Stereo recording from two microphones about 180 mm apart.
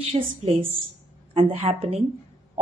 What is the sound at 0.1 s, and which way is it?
A woman's voice, 40° right (ahead or behind).